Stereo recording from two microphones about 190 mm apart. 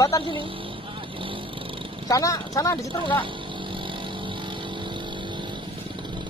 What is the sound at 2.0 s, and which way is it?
Speech, 15° left (ahead or behind).